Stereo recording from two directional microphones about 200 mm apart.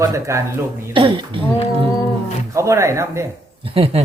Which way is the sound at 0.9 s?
25° right (ahead or behind).